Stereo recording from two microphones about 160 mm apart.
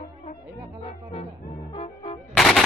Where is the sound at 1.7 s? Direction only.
35° left (ahead or behind).